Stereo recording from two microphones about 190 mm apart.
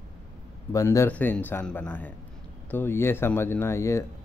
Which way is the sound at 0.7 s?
15° left (ahead or behind).